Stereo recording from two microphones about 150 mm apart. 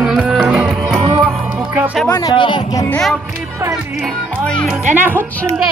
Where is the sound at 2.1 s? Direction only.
30° left (ahead or behind).